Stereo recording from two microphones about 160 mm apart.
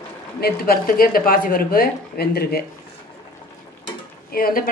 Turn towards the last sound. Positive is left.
turn(degrees=65)  # may be behind; listen again after turning